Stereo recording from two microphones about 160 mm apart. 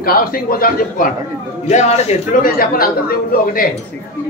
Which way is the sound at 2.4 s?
65° left (ahead or behind).